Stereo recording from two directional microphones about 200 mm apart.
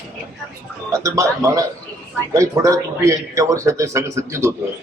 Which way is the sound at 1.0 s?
15° right (ahead or behind).